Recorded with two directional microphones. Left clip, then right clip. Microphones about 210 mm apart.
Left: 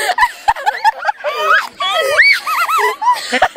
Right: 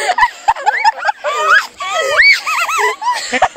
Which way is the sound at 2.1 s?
20° right (ahead or behind).